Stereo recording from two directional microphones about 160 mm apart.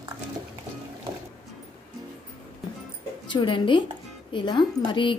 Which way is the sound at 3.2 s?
30° left (ahead or behind).